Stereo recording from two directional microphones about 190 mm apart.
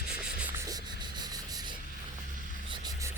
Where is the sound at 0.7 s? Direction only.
20° right (ahead or behind).